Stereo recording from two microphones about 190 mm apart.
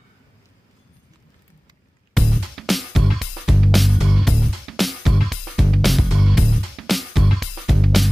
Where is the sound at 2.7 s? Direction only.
Centre (ahead or behind).